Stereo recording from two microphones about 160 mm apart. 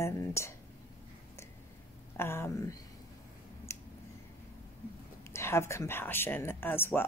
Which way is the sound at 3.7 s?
15° left (ahead or behind).